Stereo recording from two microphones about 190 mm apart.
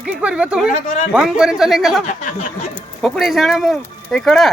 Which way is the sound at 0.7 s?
40° left (ahead or behind).